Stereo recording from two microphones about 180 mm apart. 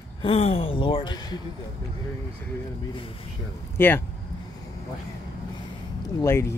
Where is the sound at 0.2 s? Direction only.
35° left (ahead or behind).